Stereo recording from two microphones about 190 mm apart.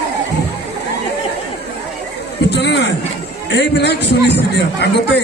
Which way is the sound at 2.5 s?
65° left (ahead or behind).